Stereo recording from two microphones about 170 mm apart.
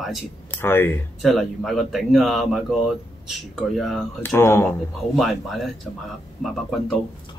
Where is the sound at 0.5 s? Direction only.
15° left (ahead or behind).